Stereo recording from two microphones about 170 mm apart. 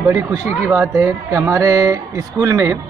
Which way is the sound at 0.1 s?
20° right (ahead or behind).